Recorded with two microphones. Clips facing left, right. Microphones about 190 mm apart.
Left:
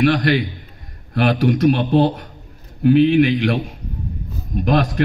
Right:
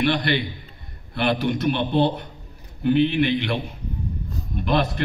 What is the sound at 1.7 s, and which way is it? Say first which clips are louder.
Speech: left 2 dB; 40° left (ahead or behind).